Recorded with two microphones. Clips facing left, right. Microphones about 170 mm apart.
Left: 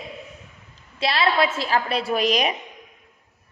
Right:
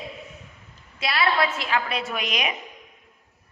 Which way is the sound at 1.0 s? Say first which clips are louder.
Left 3 dB; 25° left (ahead or behind).